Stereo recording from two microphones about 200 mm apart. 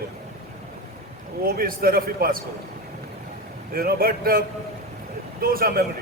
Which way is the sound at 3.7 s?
50° right (ahead or behind).